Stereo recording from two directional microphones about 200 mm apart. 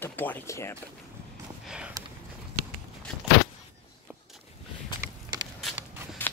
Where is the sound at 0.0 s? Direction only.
10° left (ahead or behind).